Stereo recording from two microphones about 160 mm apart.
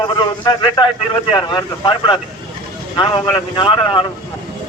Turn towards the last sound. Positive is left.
turn(degrees=30)  # may be behind; listen again after turning